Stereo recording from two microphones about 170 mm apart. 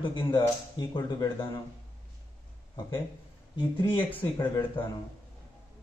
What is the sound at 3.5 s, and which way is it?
Speech, 30° left (ahead or behind).